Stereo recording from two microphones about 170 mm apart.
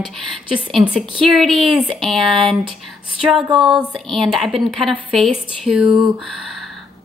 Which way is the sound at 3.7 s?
5° right (ahead or behind).